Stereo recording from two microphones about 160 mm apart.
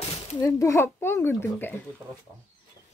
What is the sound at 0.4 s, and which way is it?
Speech, 20° left (ahead or behind).